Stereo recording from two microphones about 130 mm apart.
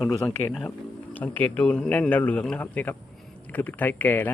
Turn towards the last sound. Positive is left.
turn(degrees=15)  # may be behind; listen again after turning